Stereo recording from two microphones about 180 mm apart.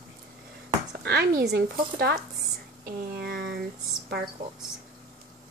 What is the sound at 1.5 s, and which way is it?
Speech, 60° right (ahead or behind).